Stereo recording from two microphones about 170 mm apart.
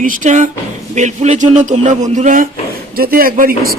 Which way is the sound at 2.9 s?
60° right (ahead or behind).